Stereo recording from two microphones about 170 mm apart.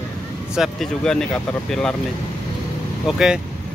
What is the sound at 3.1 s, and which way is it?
Speech, 5° right (ahead or behind).